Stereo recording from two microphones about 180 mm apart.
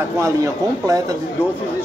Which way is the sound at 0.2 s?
20° right (ahead or behind).